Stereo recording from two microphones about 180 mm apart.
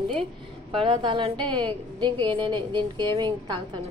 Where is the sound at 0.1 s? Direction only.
30° right (ahead or behind).